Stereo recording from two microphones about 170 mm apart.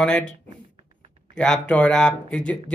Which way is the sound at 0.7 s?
35° right (ahead or behind).